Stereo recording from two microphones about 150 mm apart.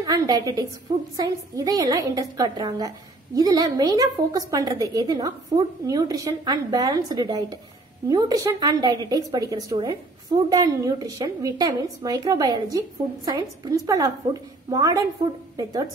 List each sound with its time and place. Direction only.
0.0 s a woman's voice: 25° right (ahead or behind)